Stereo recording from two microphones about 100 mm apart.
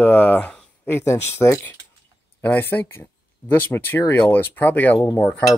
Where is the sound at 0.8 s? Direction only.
25° left (ahead or behind).